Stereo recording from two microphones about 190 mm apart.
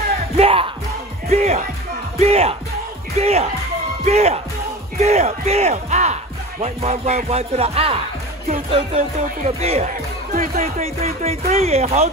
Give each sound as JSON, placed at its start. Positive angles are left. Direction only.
{"t": 0.4, "sound": "music", "side_deg": -30}
{"t": 1.3, "sound": "speech", "side_deg": -35}
{"t": 8.6, "sound": "music", "side_deg": -30}
{"t": 9.6, "sound": "speech", "side_deg": -35}
{"t": 10.3, "sound": "speech", "side_deg": -45}
{"t": 10.8, "sound": "speech", "side_deg": -35}